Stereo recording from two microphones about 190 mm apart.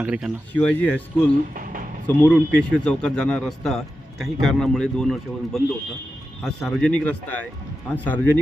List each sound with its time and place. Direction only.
0.0 s speech: 5° right (ahead or behind)
0.5 s speech: 10° left (ahead or behind)
2.0 s a man's voice: 5° left (ahead or behind)